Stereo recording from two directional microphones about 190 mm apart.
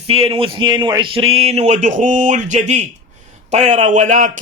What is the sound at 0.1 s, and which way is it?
A man's voice, 30° right (ahead or behind).